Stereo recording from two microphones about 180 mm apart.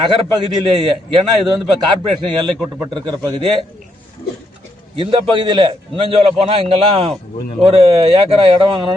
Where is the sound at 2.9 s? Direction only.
25° right (ahead or behind).